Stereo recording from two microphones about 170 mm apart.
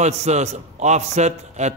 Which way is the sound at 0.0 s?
40° right (ahead or behind).